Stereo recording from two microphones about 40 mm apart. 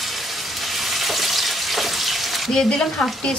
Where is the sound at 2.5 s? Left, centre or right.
Centre.